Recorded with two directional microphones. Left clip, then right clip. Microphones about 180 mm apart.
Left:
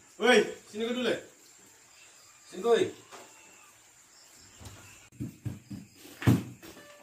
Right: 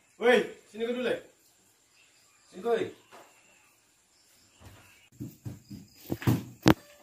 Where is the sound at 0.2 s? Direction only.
Centre (ahead or behind).